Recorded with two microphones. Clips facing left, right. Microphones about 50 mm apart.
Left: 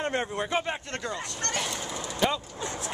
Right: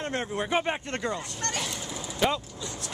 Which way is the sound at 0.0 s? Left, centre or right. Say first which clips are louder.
Left 2 dB; centre.